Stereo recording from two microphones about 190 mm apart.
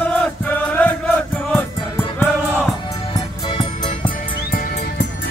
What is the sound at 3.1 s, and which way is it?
Music, 25° left (ahead or behind).